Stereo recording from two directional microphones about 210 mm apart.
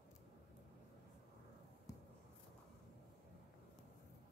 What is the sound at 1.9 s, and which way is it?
Writing, 15° left (ahead or behind).